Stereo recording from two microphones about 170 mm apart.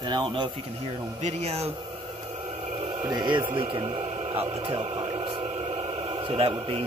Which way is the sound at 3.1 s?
25° right (ahead or behind).